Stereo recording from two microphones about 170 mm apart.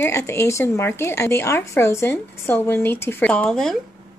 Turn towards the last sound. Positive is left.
turn(degrees=5)  # may be behind; listen again after turning